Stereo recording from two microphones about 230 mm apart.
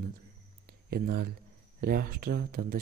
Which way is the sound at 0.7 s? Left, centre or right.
Right.